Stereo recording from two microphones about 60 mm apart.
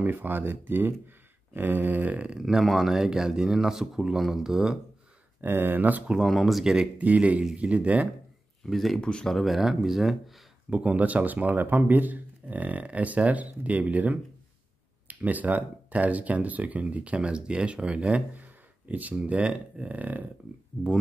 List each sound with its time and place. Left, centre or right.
0.0 s speech: right
2.3 s speech: centre
5.4 s speech: right
6.2 s speech: centre
6.6 s speech: centre
7.0 s speech: right
8.6 s speech: centre
9.0 s speech: centre
9.3 s speech: centre
10.7 s speech: centre